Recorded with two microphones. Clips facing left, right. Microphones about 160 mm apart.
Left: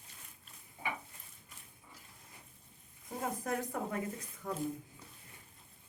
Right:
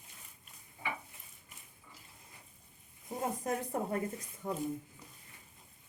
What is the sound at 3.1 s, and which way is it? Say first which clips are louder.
Speech: right 2 dB; 20° right (ahead or behind).